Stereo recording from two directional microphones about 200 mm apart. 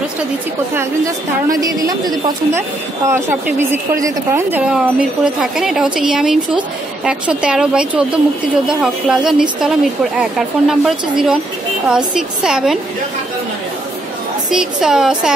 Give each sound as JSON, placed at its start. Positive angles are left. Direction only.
{"t": 0.7, "sound": "a woman's voice", "side_deg": -15}
{"t": 14.5, "sound": "speech", "side_deg": -5}